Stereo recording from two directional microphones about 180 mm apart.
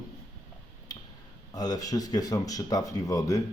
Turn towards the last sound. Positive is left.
turn(degrees=20)  # may be behind; listen again after turning